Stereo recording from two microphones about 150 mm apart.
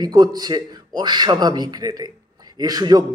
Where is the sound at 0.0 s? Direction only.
25° right (ahead or behind).